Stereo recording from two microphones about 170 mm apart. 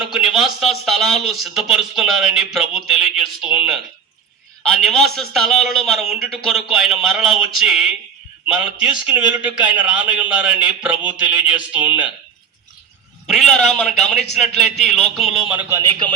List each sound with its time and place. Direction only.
0.0 s speech: centre (ahead or behind)
4.6 s a man's voice: 5° left (ahead or behind)
13.2 s speech: centre (ahead or behind)
15.7 s a man's voice: 25° right (ahead or behind)